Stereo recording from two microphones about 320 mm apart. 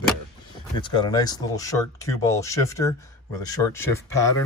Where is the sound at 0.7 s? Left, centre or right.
Centre.